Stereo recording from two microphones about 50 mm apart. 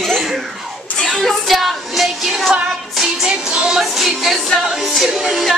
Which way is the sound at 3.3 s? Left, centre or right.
Centre.